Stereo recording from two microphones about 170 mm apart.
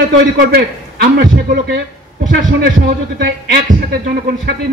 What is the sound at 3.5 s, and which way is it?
Speech, 70° right (ahead or behind).